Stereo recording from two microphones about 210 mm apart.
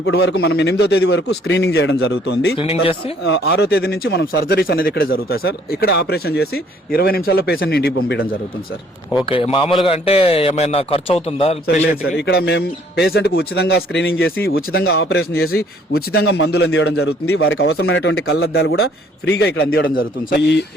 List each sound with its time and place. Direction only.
0.0 s speech: 55° left (ahead or behind)
9.3 s a man's voice: 25° left (ahead or behind)
12.1 s a man's voice: 50° left (ahead or behind)
17.2 s speech: 75° left (ahead or behind)